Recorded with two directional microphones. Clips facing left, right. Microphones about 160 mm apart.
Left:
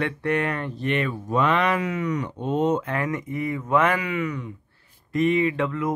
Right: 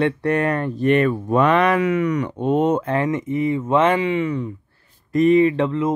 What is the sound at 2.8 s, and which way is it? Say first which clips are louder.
Speech: right 6 dB; 30° right (ahead or behind).